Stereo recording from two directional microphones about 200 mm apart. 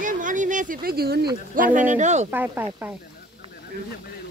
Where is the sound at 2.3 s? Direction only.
10° right (ahead or behind).